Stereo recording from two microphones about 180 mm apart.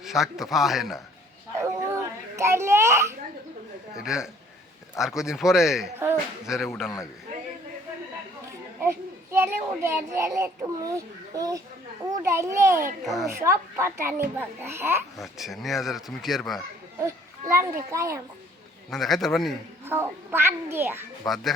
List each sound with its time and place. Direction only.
0.0 s speech: centre (ahead or behind)
1.5 s babbling: 15° right (ahead or behind)
3.9 s speech: 5° right (ahead or behind)
8.4 s a child's voice: 15° right (ahead or behind)
13.0 s speech: centre (ahead or behind)
13.4 s a child's voice: 15° right (ahead or behind)
15.2 s speech: centre (ahead or behind)
17.9 s a child's voice: 15° right (ahead or behind)
18.9 s speech: centre (ahead or behind)
19.8 s a child's voice: 15° right (ahead or behind)
21.2 s speech: centre (ahead or behind)